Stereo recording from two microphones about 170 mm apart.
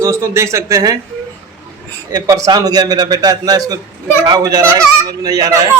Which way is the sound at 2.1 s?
20° right (ahead or behind).